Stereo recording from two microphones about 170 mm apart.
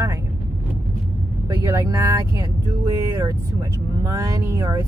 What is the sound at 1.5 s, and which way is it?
Speech, 20° right (ahead or behind).